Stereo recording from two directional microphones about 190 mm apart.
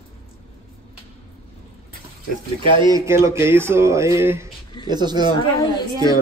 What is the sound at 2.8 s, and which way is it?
Speech, 15° right (ahead or behind).